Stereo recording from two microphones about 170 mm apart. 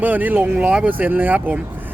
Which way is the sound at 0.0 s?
10° right (ahead or behind).